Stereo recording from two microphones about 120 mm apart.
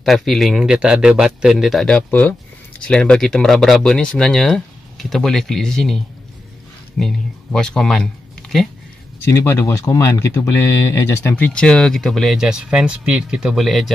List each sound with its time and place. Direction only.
0.0 s speech: centre (ahead or behind)
9.2 s speech: 20° left (ahead or behind)
11.4 s speech: 5° left (ahead or behind)